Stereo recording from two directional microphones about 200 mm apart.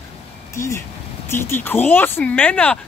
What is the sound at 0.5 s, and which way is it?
Speech, 15° left (ahead or behind).